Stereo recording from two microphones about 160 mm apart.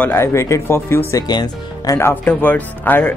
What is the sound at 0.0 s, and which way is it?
Speech, 15° left (ahead or behind).